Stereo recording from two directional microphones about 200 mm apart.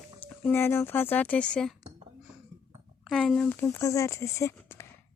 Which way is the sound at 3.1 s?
Centre (ahead or behind).